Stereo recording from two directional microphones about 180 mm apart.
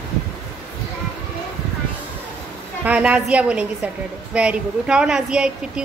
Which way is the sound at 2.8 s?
5° right (ahead or behind).